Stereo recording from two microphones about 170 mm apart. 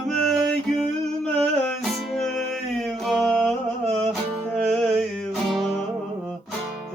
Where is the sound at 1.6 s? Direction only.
Centre (ahead or behind).